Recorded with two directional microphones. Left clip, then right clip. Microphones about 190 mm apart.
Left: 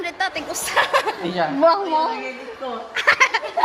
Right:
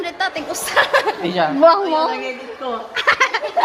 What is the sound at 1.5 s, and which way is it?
Speech, 10° right (ahead or behind).